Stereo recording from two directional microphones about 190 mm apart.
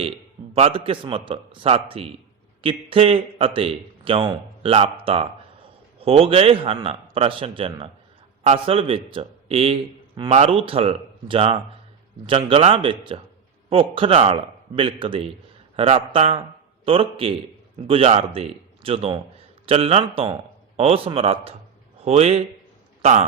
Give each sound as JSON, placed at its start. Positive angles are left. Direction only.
{"t": 0.5, "sound": "a man's voice", "side_deg": -30}